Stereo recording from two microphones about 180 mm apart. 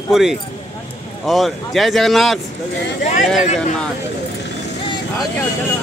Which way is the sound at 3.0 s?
40° left (ahead or behind).